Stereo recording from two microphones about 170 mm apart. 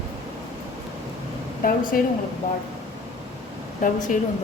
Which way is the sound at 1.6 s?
55° left (ahead or behind).